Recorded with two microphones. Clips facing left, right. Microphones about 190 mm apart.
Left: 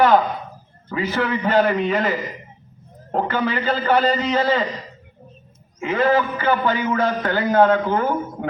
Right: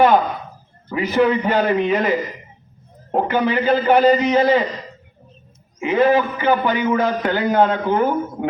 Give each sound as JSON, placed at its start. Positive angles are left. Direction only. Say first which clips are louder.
{"t": 0.9, "sound": "a man's voice", "louder": "right 6 dB", "side_deg": -15}
{"t": 5.8, "sound": "a man's voice", "louder": "right 3 dB", "side_deg": -15}